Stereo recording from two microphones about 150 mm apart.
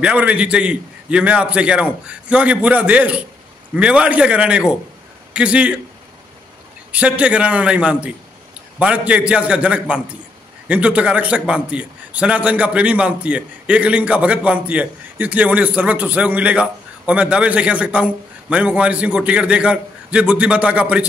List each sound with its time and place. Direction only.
0.0 s a man's voice: 10° right (ahead or behind)
6.9 s a man's voice: 10° right (ahead or behind)